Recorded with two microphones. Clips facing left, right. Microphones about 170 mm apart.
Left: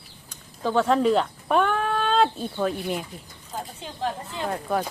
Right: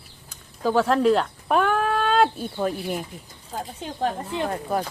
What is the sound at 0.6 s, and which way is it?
Speech, 5° right (ahead or behind).